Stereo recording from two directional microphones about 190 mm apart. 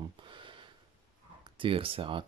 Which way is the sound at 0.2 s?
25° right (ahead or behind).